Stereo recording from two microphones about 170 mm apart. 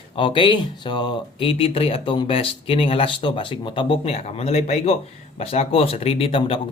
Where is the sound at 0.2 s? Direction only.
30° left (ahead or behind).